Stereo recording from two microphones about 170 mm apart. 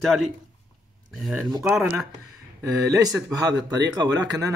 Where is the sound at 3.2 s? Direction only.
20° right (ahead or behind).